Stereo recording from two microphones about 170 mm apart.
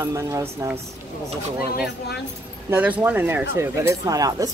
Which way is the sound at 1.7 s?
70° left (ahead or behind).